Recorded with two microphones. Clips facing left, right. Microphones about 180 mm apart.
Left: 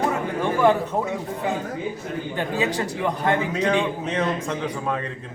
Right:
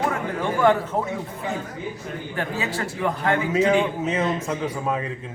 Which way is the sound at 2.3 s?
20° left (ahead or behind).